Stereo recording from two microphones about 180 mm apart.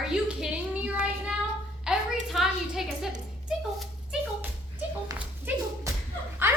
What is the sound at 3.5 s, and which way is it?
Dog, 5° right (ahead or behind).